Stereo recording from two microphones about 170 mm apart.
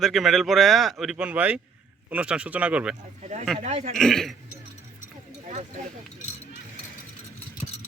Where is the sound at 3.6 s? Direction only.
40° right (ahead or behind).